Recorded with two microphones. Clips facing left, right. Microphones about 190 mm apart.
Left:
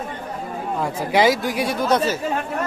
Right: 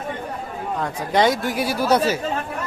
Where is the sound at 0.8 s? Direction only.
5° left (ahead or behind); by 2.2 s 10° right (ahead or behind).